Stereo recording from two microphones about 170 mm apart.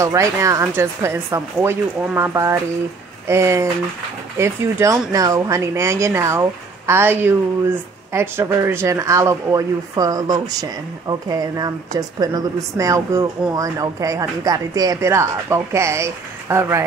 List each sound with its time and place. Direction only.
0.0 s speech: 20° right (ahead or behind)